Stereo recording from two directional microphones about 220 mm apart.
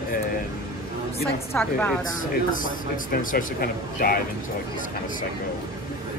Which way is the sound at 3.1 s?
40° left (ahead or behind).